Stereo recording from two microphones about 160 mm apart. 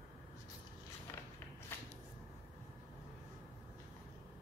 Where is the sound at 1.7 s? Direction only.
15° left (ahead or behind).